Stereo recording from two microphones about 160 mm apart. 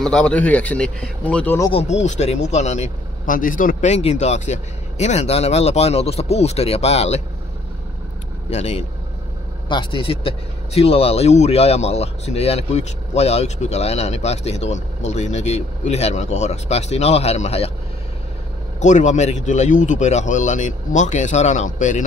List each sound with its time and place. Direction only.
0.0 s speech: 5° left (ahead or behind)
1.7 s speech: 40° left (ahead or behind)
8.5 s speech: 40° left (ahead or behind)
9.7 s speech: 30° left (ahead or behind)
18.8 s speech: 50° left (ahead or behind)